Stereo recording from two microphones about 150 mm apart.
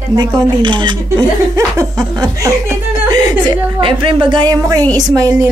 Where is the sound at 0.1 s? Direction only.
30° right (ahead or behind).